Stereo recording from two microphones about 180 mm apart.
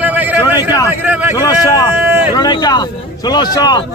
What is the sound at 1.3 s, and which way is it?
Speech, 20° left (ahead or behind).